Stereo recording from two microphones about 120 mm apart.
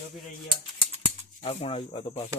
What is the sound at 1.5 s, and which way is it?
Speech, 55° left (ahead or behind).